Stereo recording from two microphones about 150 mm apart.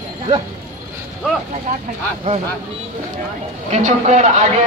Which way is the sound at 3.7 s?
55° right (ahead or behind).